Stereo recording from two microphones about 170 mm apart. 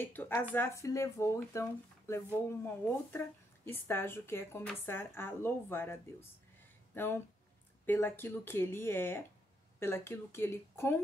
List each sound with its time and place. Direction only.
0.0 s speech: 10° left (ahead or behind)